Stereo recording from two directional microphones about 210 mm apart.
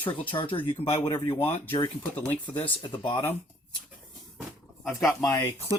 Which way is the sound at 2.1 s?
10° left (ahead or behind).